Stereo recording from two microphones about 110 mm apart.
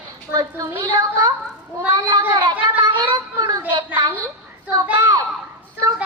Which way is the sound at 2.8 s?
45° right (ahead or behind).